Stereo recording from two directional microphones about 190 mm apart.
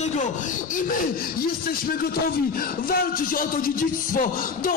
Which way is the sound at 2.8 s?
50° left (ahead or behind).